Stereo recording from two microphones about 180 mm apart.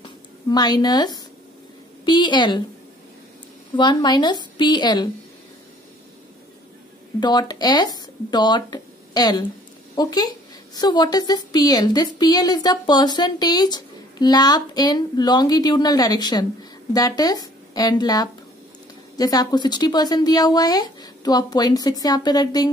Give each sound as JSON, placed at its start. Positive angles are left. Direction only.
{"t": 0.0, "sound": "a sound", "side_deg": 25}
{"t": 2.0, "sound": "a woman's voice", "side_deg": 25}
{"t": 3.7, "sound": "a woman's voice", "side_deg": 25}
{"t": 7.2, "sound": "a woman's voice", "side_deg": 25}